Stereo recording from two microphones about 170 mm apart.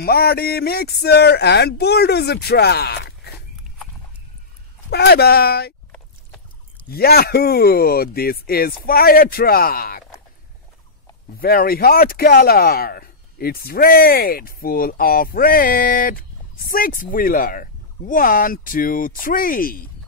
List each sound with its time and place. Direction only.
0.0 s speech: 65° left (ahead or behind)
4.9 s speech: 70° left (ahead or behind)
6.9 s speech: 65° left (ahead or behind)
11.3 s speech: 60° left (ahead or behind)